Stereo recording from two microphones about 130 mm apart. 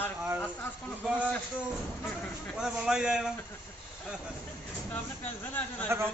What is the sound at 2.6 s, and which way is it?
Speech, 5° right (ahead or behind).